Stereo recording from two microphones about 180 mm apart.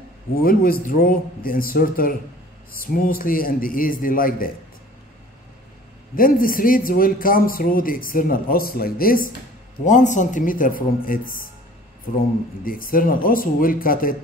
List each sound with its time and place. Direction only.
0.4 s a man's voice: 55° left (ahead or behind)
6.1 s a man's voice: 50° left (ahead or behind)
12.6 s a man's voice: 50° left (ahead or behind)